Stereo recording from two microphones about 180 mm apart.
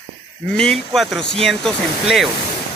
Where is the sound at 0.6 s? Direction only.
Centre (ahead or behind).